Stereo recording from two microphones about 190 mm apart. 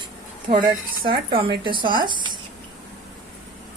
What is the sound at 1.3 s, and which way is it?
A woman's voice, 30° right (ahead or behind).